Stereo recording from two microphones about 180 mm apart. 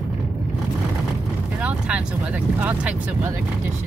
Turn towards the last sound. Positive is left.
turn(degrees=-10)  # may be behind; listen again after turning